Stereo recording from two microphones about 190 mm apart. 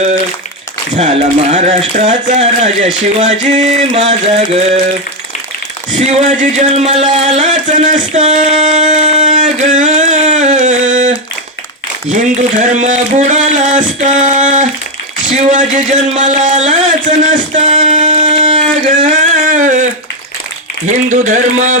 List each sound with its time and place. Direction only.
0.9 s speech: 35° right (ahead or behind)
6.0 s speech: 35° right (ahead or behind)
12.1 s speech: 40° right (ahead or behind)
17.2 s singing: 40° right (ahead or behind)
20.8 s speech: 40° right (ahead or behind)